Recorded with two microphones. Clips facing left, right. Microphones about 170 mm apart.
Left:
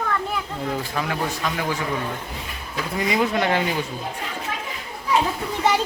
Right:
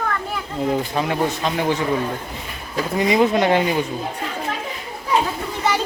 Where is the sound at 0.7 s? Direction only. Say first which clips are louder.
Right 5 dB; 25° right (ahead or behind).